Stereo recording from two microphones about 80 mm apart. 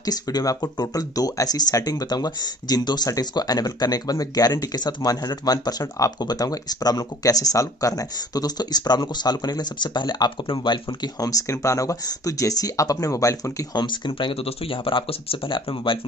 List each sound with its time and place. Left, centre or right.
0.0 s speech: left
11.1 s speech: left
13.7 s speech: left